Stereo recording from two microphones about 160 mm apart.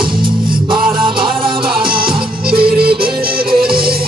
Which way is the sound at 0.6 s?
30° right (ahead or behind).